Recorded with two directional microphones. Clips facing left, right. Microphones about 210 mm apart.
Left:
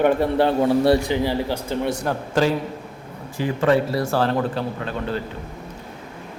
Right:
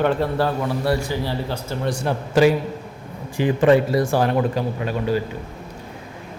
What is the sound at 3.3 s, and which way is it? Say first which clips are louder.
A man's voice: right 3 dB; 20° right (ahead or behind).